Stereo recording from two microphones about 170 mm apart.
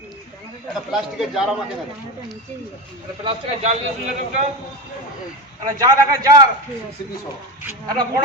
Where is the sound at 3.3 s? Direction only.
40° right (ahead or behind).